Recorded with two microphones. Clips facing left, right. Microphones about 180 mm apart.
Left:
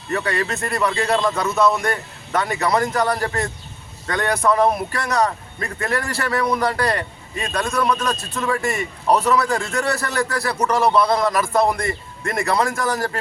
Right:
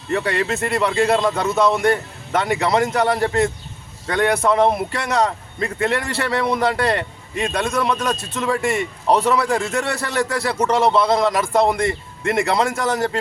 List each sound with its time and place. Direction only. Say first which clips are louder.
0.3 s a man's voice: right 2 dB; 25° right (ahead or behind)